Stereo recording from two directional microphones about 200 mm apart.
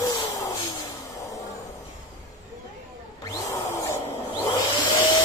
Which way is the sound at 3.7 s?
15° left (ahead or behind).